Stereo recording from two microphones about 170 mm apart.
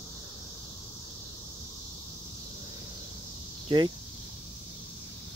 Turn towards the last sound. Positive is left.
turn(degrees=-30)  # may be behind; listen again after turning